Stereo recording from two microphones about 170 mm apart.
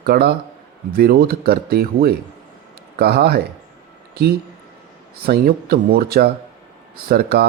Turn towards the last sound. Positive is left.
turn(degrees=-70)  # may be behind; listen again after turning